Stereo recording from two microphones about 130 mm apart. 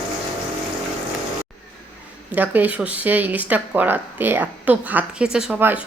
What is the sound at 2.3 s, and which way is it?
A woman's voice, 15° right (ahead or behind).